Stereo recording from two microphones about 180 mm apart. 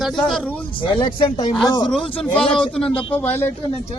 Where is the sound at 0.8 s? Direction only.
25° left (ahead or behind).